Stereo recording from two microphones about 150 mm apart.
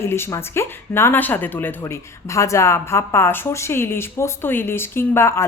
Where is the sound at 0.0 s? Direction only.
15° left (ahead or behind).